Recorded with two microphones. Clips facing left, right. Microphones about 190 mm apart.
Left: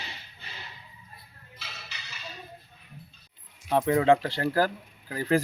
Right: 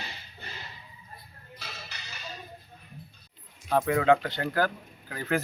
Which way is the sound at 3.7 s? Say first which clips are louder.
Left 1 dB; 20° left (ahead or behind).